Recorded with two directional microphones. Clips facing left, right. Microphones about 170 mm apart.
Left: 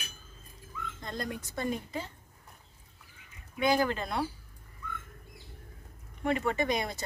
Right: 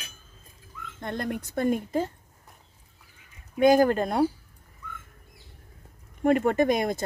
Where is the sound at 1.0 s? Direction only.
60° right (ahead or behind).